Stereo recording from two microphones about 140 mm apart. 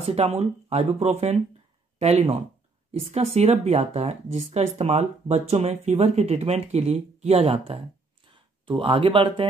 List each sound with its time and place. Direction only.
0.0 s a woman's voice: 45° right (ahead or behind)